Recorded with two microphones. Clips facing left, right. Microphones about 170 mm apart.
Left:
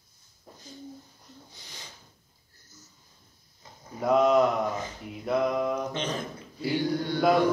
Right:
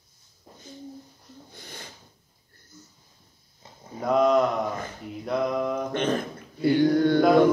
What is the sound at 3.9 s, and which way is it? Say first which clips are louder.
Speech: right 1 dB; 5° left (ahead or behind).